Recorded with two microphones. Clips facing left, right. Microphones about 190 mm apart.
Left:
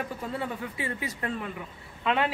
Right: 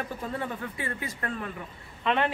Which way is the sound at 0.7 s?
15° left (ahead or behind).